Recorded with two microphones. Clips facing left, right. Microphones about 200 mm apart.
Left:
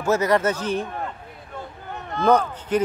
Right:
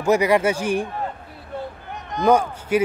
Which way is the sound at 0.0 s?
15° right (ahead or behind).